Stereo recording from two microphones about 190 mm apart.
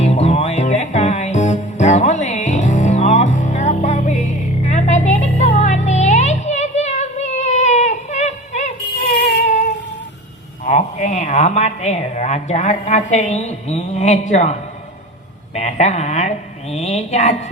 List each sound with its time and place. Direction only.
0.0 s music: 35° left (ahead or behind)
10.6 s a woman's voice: 40° left (ahead or behind)